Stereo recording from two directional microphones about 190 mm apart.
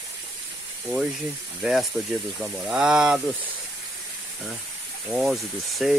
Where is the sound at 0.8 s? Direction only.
5° right (ahead or behind).